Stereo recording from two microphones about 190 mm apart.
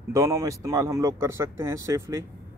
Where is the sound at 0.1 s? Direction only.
15° right (ahead or behind).